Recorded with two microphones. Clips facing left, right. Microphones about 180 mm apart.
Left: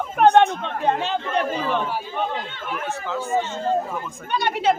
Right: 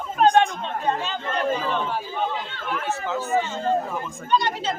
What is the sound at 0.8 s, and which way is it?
Speech, 60° left (ahead or behind).